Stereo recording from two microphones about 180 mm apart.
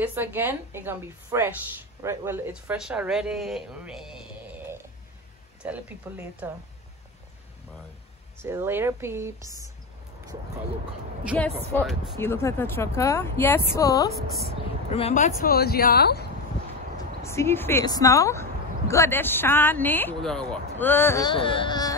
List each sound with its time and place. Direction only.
0.0 s a woman's voice: 10° right (ahead or behind)
8.4 s a woman's voice: 15° right (ahead or behind)
11.8 s speech: centre (ahead or behind)
12.2 s speech: 15° left (ahead or behind)
14.9 s speech: 35° left (ahead or behind); by 16.3 s 60° left (ahead or behind)
17.2 s speech: 15° left (ahead or behind)
21.3 s speech: 30° left (ahead or behind)